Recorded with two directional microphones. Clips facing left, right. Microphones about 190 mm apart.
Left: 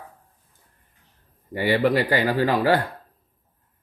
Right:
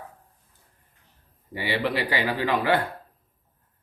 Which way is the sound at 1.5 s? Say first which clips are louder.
Left 6 dB; 45° left (ahead or behind).